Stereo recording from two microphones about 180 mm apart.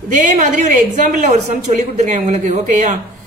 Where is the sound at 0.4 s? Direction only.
45° right (ahead or behind).